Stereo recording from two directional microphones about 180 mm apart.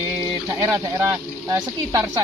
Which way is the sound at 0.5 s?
20° right (ahead or behind).